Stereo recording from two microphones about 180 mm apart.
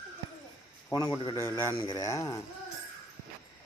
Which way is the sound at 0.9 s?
20° left (ahead or behind).